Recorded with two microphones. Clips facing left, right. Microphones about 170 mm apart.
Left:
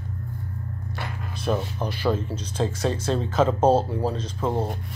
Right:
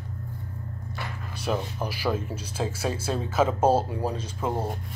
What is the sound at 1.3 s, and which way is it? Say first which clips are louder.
Speech: left 3 dB; 10° right (ahead or behind).